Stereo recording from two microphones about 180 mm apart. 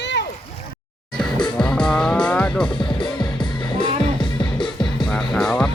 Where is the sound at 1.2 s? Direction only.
5° left (ahead or behind).